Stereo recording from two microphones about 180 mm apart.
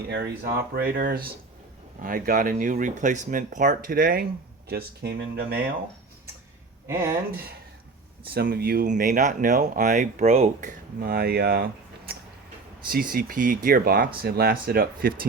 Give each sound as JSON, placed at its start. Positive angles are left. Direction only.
{"t": 0.1, "sound": "speech", "side_deg": -65}
{"t": 8.3, "sound": "speech", "side_deg": -60}